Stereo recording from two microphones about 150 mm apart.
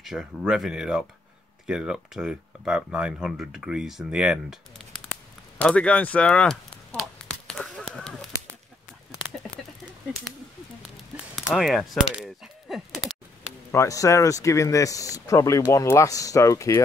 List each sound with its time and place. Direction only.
0.0 s speech: centre (ahead or behind)
11.3 s a sound: centre (ahead or behind)
13.7 s speech: 20° left (ahead or behind)